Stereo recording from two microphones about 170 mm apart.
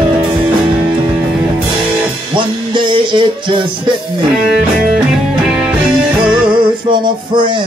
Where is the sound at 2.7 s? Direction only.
30° right (ahead or behind).